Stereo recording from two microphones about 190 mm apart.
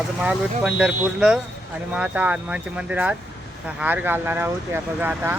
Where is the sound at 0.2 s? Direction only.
5° right (ahead or behind).